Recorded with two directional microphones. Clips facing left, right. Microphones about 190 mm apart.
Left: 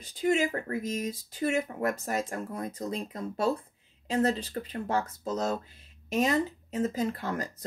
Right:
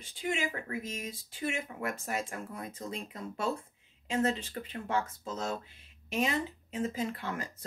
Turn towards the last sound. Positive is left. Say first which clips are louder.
# left 5 dB
turn(degrees=40)  # may be behind; listen again after turning